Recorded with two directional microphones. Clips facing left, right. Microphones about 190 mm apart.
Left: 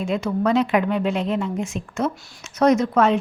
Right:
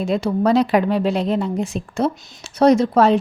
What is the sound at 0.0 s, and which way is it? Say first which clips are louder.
Speech: right 3 dB; 35° right (ahead or behind).